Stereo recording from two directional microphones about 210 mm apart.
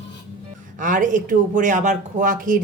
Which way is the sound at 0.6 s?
40° right (ahead or behind).